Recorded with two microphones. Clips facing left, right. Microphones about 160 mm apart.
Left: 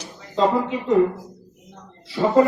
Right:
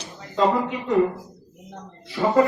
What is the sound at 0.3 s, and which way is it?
Speech, 20° left (ahead or behind).